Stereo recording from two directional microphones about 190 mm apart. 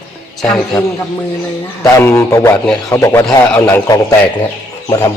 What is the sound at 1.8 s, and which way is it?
A man's voice, 10° left (ahead or behind).